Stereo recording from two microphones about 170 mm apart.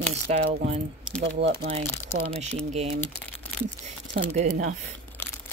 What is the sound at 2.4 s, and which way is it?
Speech, 40° right (ahead or behind).